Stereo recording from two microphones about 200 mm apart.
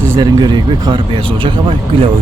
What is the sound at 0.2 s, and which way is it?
Speech, 20° right (ahead or behind).